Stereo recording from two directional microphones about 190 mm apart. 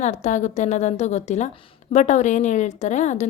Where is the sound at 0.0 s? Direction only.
40° left (ahead or behind).